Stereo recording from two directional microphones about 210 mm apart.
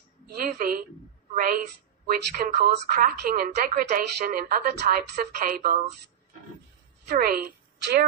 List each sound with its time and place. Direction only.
0.4 s a woman's voice: 45° right (ahead or behind)
2.0 s a woman's voice: 45° right (ahead or behind)
7.1 s a woman's voice: 45° right (ahead or behind)